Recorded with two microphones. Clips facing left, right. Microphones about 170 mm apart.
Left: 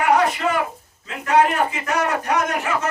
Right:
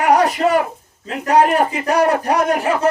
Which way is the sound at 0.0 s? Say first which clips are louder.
Right 4 dB; 40° right (ahead or behind).